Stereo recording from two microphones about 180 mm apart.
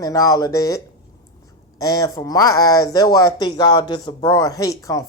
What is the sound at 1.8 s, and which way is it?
Speech, 20° left (ahead or behind).